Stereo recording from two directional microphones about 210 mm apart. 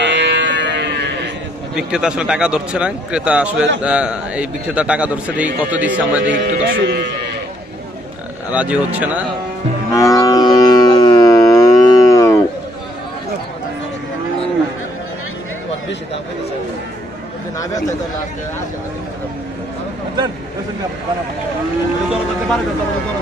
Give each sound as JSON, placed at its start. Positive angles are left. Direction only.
{"t": 0.0, "sound": "buzzer", "side_deg": -55}
{"t": 1.8, "sound": "a man's voice", "side_deg": -5}
{"t": 6.3, "sound": "speech", "side_deg": -45}
{"t": 8.5, "sound": "speech", "side_deg": -5}
{"t": 9.8, "sound": "livestock", "side_deg": 15}